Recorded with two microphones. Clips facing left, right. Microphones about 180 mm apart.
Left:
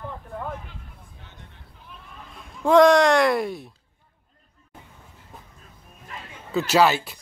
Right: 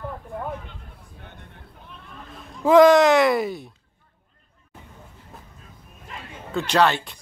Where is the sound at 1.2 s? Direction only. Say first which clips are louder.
Right 6 dB; 55° right (ahead or behind).